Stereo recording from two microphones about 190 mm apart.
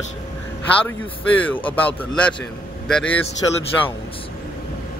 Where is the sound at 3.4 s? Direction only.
20° left (ahead or behind).